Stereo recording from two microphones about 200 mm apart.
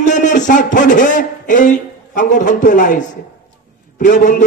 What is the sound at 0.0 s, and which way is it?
A man's voice, 40° left (ahead or behind).